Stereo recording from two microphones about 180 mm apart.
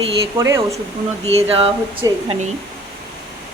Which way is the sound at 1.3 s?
35° right (ahead or behind).